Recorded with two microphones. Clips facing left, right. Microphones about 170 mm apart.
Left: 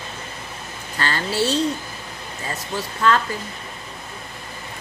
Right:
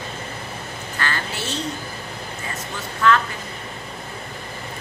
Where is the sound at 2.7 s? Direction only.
25° left (ahead or behind).